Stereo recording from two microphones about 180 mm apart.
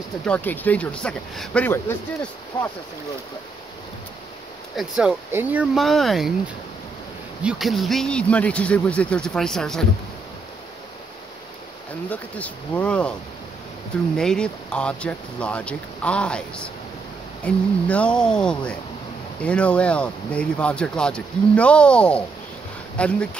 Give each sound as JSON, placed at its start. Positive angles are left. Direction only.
{"t": 0.2, "sound": "speech", "side_deg": 10}
{"t": 4.7, "sound": "speech", "side_deg": -5}
{"t": 7.4, "sound": "speech", "side_deg": 0}
{"t": 12.1, "sound": "speech", "side_deg": 10}
{"t": 14.1, "sound": "speech", "side_deg": 5}